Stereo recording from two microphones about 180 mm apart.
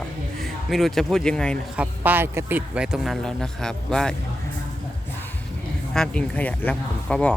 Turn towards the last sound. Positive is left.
turn(degrees=5)  # may be behind; listen again after turning